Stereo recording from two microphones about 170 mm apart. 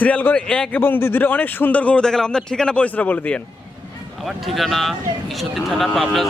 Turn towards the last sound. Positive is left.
turn(degrees=0)  # may be behind; listen again after turning